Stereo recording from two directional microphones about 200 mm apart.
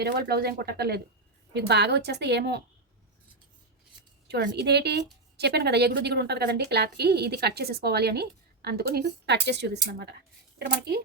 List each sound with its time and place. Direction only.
0.0 s a woman's voice: 50° right (ahead or behind)
4.3 s a woman's voice: 55° right (ahead or behind)